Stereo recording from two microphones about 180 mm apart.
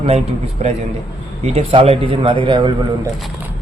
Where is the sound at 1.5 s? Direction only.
35° right (ahead or behind).